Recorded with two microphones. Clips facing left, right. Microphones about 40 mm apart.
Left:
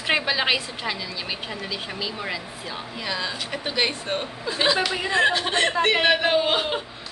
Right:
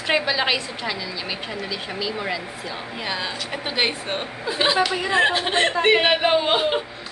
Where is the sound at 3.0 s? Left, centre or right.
Centre.